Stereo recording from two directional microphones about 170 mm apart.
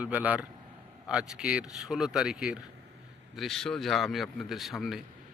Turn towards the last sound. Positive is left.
turn(degrees=0)  # may be behind; listen again after turning